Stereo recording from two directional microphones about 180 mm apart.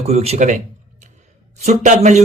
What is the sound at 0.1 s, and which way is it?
Speech, 35° right (ahead or behind).